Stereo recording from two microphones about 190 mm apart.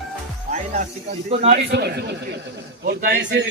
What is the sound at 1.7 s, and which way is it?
A man's voice, 60° right (ahead or behind).